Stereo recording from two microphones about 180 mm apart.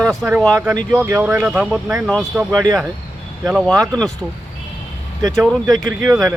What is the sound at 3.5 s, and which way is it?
Speech, 5° left (ahead or behind).